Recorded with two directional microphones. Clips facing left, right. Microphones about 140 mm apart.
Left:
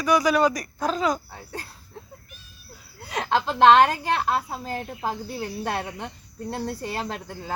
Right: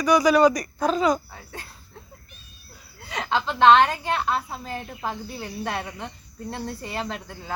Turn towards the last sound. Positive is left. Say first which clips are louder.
# even
turn(degrees=40)  # may be behind; listen again after turning